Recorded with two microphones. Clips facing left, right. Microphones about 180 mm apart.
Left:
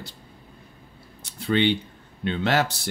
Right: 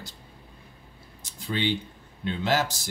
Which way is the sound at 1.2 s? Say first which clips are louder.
Left 6 dB; 65° left (ahead or behind).